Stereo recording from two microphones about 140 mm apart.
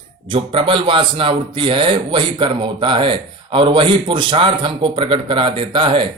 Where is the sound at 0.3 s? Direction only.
40° right (ahead or behind).